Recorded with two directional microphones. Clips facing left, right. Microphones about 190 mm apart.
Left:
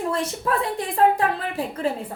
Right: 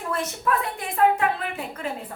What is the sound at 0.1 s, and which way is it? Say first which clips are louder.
A woman's voice: left 1 dB; 30° left (ahead or behind).